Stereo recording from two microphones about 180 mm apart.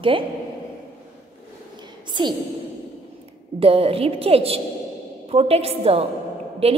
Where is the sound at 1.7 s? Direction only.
25° right (ahead or behind).